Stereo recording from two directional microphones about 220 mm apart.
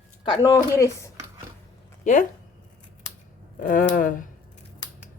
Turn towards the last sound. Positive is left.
turn(degrees=40)  # may be behind; listen again after turning